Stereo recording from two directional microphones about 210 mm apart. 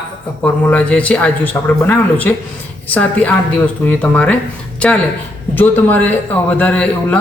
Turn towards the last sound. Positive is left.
turn(degrees=10)  # may be behind; listen again after turning